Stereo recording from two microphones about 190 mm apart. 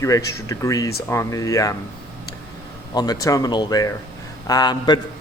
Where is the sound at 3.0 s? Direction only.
20° left (ahead or behind).